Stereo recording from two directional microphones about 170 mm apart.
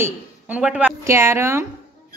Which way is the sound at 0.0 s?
5° right (ahead or behind).